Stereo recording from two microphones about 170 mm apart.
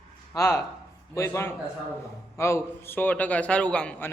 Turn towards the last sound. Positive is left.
turn(degrees=5)  # may be behind; listen again after turning